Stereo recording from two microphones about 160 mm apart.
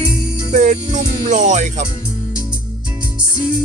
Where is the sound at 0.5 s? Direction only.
50° right (ahead or behind).